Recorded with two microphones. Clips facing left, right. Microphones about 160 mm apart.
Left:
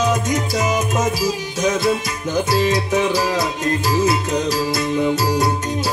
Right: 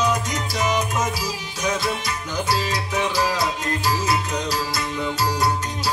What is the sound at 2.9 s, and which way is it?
Music, 25° left (ahead or behind).